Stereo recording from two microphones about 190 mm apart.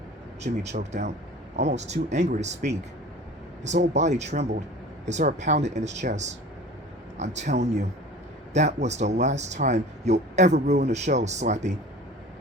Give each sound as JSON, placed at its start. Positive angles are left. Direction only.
{"t": 0.4, "sound": "speech", "side_deg": -35}